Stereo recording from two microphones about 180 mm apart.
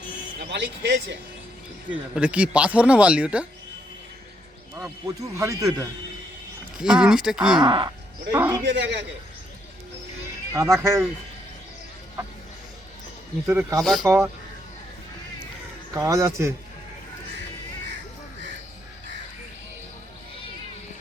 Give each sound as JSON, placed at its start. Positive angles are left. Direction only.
{"t": 0.3, "sound": "speech", "side_deg": -70}
{"t": 1.9, "sound": "speech", "side_deg": -5}
{"t": 5.0, "sound": "speech", "side_deg": -15}
{"t": 6.7, "sound": "speech", "side_deg": -5}
{"t": 7.6, "sound": "speech", "side_deg": -25}
{"t": 8.6, "sound": "speech", "side_deg": -75}
{"t": 10.5, "sound": "speech", "side_deg": -15}
{"t": 13.5, "sound": "speech", "side_deg": -15}
{"t": 13.8, "sound": "speech", "side_deg": 0}
{"t": 16.0, "sound": "speech", "side_deg": -15}